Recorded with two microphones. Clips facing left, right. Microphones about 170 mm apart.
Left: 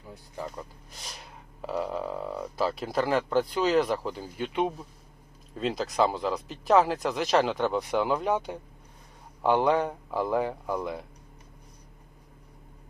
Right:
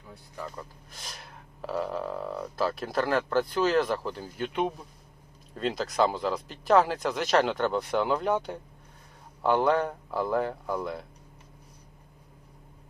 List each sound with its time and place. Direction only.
0.1 s speech: 20° left (ahead or behind)
0.9 s gasp: centre (ahead or behind)
1.7 s a sound: 10° left (ahead or behind)
3.5 s speech: 10° left (ahead or behind)